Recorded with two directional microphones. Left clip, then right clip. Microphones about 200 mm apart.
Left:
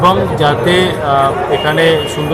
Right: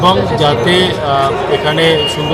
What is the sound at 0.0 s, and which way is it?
A man's voice, 5° left (ahead or behind).